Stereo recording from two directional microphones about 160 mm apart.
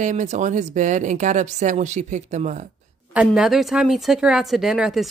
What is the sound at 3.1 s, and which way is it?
Speech, 5° right (ahead or behind).